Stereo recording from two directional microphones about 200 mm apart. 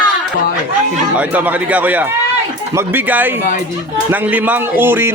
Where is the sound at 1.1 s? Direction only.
10° right (ahead or behind).